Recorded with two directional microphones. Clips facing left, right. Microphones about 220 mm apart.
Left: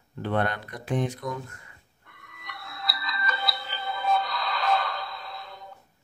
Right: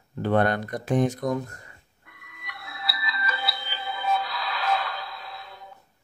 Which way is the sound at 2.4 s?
5° right (ahead or behind).